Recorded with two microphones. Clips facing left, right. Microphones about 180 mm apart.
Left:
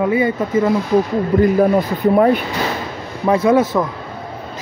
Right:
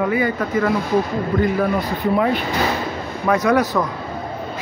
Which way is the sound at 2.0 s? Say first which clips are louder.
Left 6 dB; 50° left (ahead or behind).